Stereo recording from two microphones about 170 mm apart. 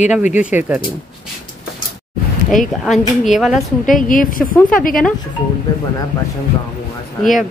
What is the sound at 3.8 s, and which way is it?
Speech, 50° left (ahead or behind).